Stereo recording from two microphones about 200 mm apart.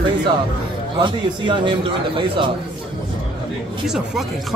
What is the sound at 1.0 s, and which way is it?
Speech, 25° right (ahead or behind).